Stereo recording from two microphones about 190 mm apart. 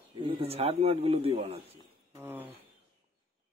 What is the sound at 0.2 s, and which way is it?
A man's voice, 30° right (ahead or behind).